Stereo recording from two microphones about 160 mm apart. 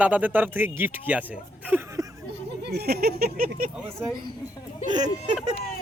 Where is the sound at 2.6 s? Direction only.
85° right; by 3.6 s 60° right (ahead or behind).